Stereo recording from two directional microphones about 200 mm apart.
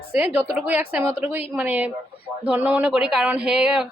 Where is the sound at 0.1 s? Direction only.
10° right (ahead or behind).